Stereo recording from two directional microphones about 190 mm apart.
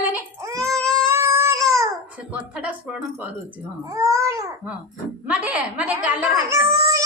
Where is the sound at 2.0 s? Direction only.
5° right (ahead or behind).